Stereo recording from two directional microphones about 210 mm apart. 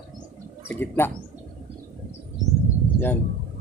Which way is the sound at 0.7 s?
10° left (ahead or behind).